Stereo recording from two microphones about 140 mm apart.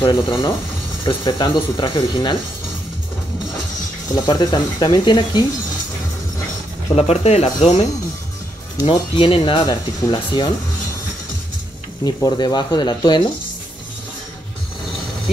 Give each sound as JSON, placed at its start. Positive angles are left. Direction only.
{"t": 0.0, "sound": "speech", "side_deg": 35}
{"t": 4.1, "sound": "speech", "side_deg": 30}
{"t": 7.0, "sound": "speech", "side_deg": 50}
{"t": 8.8, "sound": "speech", "side_deg": 40}
{"t": 12.0, "sound": "speech", "side_deg": 30}